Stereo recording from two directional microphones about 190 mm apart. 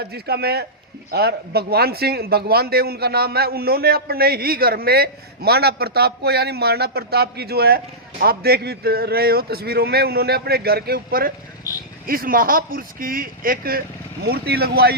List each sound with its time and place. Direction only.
0.0 s a man's voice: 60° right (ahead or behind)